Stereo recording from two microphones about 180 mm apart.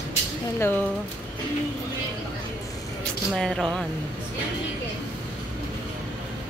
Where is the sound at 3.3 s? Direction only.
Centre (ahead or behind).